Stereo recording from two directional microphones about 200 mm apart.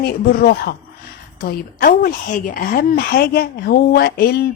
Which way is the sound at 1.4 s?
50° left (ahead or behind).